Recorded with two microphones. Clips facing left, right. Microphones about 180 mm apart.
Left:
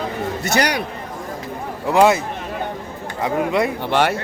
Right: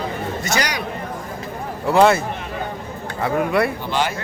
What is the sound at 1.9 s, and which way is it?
Speech, 15° left (ahead or behind).